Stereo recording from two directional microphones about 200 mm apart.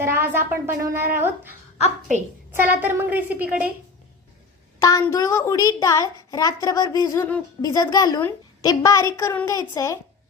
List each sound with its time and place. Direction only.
0.0 s speech: 10° right (ahead or behind)
1.8 s a woman's voice: 35° right (ahead or behind)
2.5 s speech: 10° right (ahead or behind)
4.8 s a child's voice: 15° left (ahead or behind)